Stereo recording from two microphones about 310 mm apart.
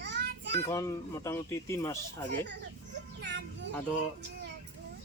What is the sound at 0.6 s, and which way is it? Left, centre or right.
Speech, centre.